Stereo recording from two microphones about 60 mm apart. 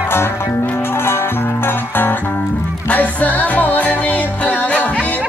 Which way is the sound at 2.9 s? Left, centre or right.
Left.